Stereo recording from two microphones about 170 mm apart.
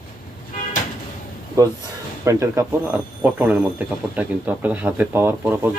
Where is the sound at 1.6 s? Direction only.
20° right (ahead or behind).